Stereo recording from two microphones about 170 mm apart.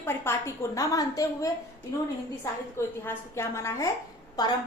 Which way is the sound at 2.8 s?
15° left (ahead or behind).